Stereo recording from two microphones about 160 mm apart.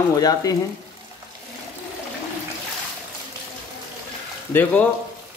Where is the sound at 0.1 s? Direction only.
25° left (ahead or behind).